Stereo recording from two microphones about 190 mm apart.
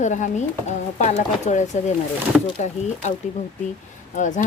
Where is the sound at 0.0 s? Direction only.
40° left (ahead or behind).